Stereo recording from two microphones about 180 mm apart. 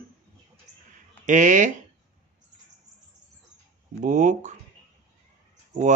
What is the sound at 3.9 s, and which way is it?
Speech, 45° right (ahead or behind).